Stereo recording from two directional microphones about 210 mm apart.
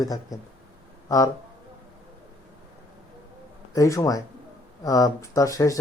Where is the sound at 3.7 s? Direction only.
15° left (ahead or behind).